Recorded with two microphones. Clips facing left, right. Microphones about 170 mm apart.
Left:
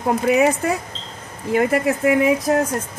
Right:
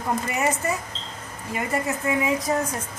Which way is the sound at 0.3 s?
65° left (ahead or behind).